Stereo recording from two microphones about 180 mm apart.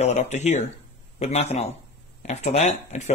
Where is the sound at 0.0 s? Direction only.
40° left (ahead or behind).